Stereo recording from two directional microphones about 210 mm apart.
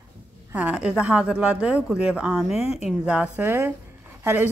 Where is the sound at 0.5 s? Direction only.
5° right (ahead or behind).